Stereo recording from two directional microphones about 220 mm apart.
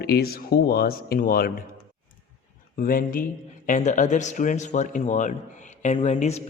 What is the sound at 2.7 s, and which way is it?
Speech, 40° left (ahead or behind).